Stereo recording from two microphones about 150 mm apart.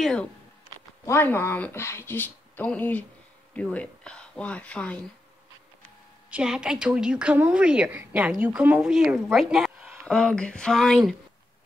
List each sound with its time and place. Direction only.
0.0 s speech: 5° left (ahead or behind)
1.0 s speech: 15° left (ahead or behind)
6.3 s a woman's voice: 5° right (ahead or behind)
10.1 s speech: 5° left (ahead or behind)